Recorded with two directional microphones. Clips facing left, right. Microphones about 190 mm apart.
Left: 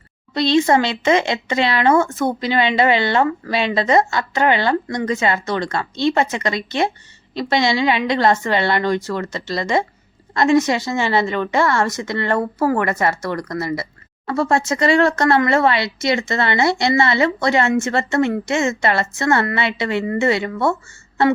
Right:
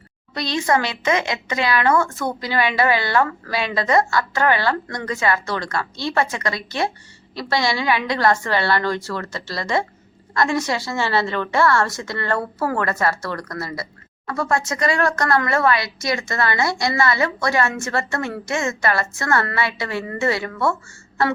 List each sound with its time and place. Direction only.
0.3 s speech: 25° left (ahead or behind)